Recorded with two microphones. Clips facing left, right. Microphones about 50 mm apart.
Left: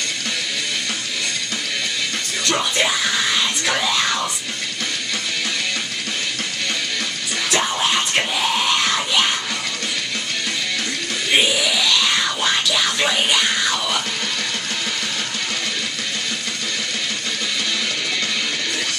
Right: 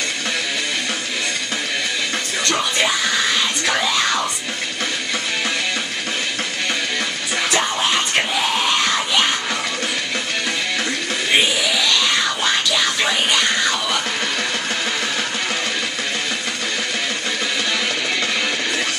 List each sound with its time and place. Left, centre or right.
2.4 s a sound: centre
7.5 s music: centre
11.3 s music: centre